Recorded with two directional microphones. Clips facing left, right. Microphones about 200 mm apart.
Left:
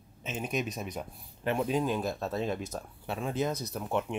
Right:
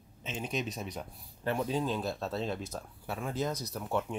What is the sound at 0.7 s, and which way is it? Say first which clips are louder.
Speech: left 2 dB; 20° left (ahead or behind).